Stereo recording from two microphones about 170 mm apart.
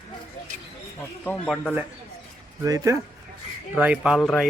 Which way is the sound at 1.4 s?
5° left (ahead or behind).